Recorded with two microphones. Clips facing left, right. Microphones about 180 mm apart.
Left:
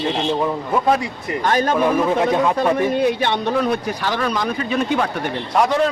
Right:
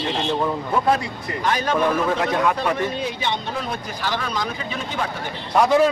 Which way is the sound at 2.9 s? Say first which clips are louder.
Left 7 dB; 60° left (ahead or behind).